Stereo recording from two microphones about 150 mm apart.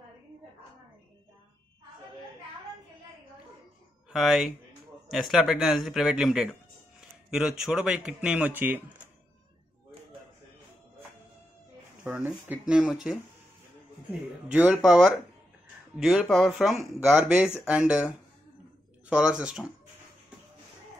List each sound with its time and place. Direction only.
4.1 s a man's voice: centre (ahead or behind)
12.0 s speech: 10° right (ahead or behind)
14.5 s speech: 10° right (ahead or behind)